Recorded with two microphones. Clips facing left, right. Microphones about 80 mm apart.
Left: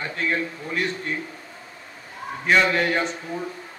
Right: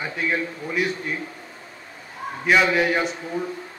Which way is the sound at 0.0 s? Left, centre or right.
Centre.